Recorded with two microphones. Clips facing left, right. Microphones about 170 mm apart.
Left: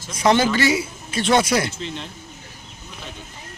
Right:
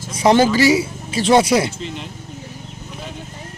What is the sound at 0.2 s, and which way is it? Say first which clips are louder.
A man's voice: right 4 dB; 35° right (ahead or behind).